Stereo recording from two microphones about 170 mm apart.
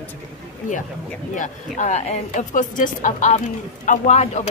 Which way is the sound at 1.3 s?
45° left (ahead or behind).